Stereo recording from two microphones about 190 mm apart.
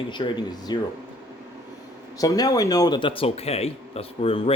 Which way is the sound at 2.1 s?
20° left (ahead or behind).